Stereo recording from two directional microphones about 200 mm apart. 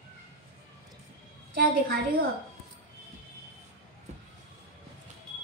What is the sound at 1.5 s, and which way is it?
Speech, 45° right (ahead or behind).